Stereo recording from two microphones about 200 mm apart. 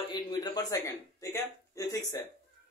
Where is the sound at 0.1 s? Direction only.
20° left (ahead or behind).